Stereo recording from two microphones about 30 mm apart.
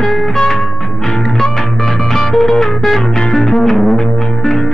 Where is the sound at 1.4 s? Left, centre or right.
Centre.